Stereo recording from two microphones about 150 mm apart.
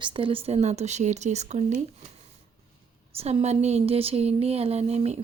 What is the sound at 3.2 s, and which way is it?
Speech, 45° right (ahead or behind).